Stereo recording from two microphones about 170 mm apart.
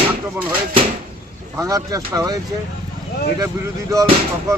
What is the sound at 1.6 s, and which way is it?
Speech, 20° right (ahead or behind).